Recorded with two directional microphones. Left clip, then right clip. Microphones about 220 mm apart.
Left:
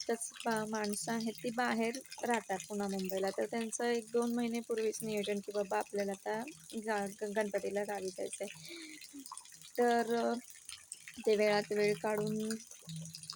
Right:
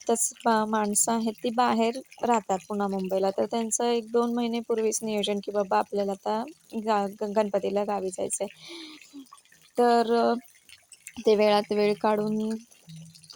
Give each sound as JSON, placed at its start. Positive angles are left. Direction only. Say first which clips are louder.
{"t": 0.0, "sound": "speech", "louder": "right 11 dB", "side_deg": -35}
{"t": 5.5, "sound": "speech", "louder": "right 11 dB", "side_deg": -25}